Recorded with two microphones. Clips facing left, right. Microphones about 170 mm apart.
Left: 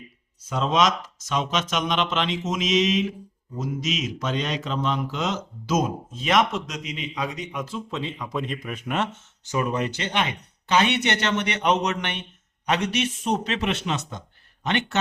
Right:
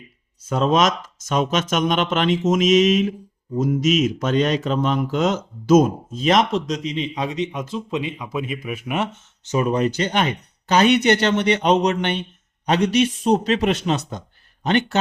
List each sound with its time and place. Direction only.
0.4 s speech: 50° right (ahead or behind); by 9.0 s 10° right (ahead or behind)
9.4 s speech: 20° right (ahead or behind)
9.7 s speech: 35° right (ahead or behind)